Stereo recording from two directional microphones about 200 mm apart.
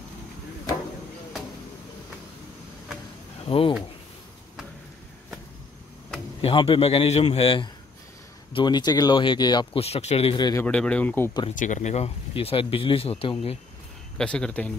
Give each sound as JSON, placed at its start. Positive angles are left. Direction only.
{"t": 3.4, "sound": "speech", "side_deg": 30}
{"t": 6.4, "sound": "speech", "side_deg": 25}
{"t": 10.6, "sound": "speech", "side_deg": 5}
{"t": 11.5, "sound": "speech", "side_deg": 40}
{"t": 14.1, "sound": "speech", "side_deg": 5}